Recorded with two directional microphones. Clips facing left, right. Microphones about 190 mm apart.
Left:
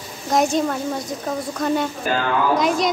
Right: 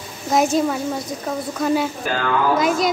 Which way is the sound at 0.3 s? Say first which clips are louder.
Right 1 dB; 5° right (ahead or behind).